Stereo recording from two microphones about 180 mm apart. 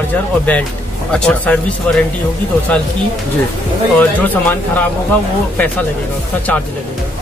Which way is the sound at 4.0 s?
10° left (ahead or behind).